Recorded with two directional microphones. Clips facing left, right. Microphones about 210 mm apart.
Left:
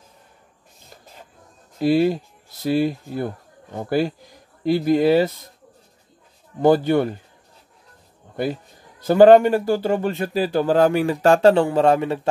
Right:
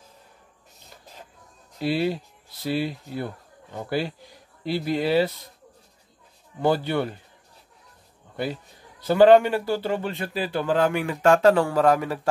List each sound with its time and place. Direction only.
1.8 s speech: 45° left (ahead or behind)
6.6 s speech: 45° left (ahead or behind)
9.0 s speech: 45° left (ahead or behind); by 12.2 s 25° left (ahead or behind)